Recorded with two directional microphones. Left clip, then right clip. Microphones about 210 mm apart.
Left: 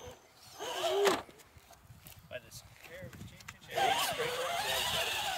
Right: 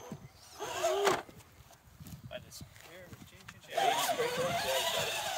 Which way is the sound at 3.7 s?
15° right (ahead or behind).